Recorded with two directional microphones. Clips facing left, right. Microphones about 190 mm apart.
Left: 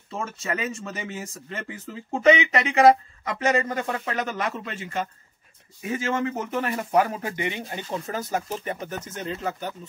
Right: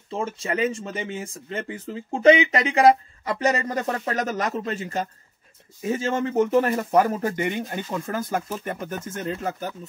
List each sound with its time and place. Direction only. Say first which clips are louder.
0.1 s speech: right 3 dB; 30° right (ahead or behind)
5.8 s speech: right 2 dB; 30° right (ahead or behind); by 9.7 s 50° right (ahead or behind)